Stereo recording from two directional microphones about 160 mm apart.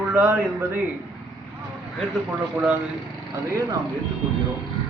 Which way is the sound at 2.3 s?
10° right (ahead or behind).